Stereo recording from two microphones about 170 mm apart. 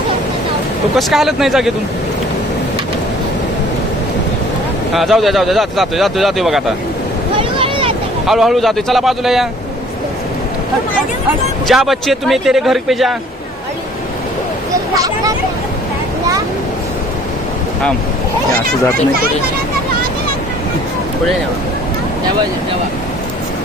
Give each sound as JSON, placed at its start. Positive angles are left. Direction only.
{"t": 0.9, "sound": "a man's voice", "side_deg": 0}
{"t": 4.9, "sound": "a man's voice", "side_deg": 0}
{"t": 7.6, "sound": "vehicle", "side_deg": -35}
{"t": 8.3, "sound": "a man's voice", "side_deg": 0}
{"t": 11.7, "sound": "a man's voice", "side_deg": 0}
{"t": 14.9, "sound": "a sound", "side_deg": -20}